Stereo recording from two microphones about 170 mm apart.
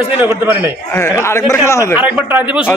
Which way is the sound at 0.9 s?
15° left (ahead or behind).